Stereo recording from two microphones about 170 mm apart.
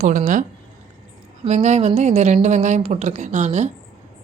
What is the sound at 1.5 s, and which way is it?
Speech, 45° right (ahead or behind).